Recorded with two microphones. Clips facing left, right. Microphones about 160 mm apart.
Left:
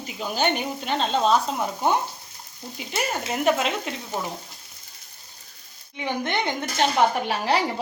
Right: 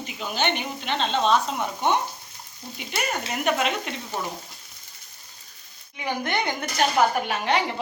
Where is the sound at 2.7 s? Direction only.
30° left (ahead or behind).